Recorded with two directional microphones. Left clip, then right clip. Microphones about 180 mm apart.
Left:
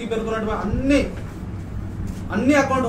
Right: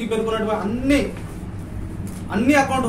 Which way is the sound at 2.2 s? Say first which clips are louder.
Right 1 dB; 15° right (ahead or behind).